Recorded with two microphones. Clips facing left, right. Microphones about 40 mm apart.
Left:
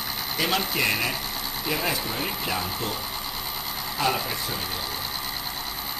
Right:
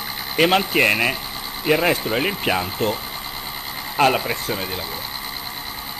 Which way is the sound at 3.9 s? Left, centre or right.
Right.